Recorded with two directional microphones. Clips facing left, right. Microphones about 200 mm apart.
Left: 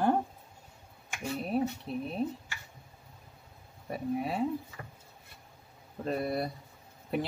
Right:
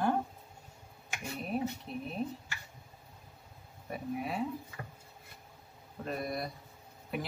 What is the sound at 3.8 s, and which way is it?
Speech, 30° left (ahead or behind).